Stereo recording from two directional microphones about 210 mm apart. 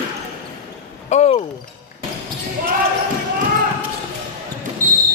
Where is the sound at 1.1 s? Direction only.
30° left (ahead or behind).